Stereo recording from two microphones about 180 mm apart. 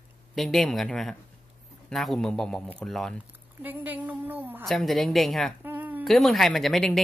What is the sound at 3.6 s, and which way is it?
A woman's voice, 10° right (ahead or behind).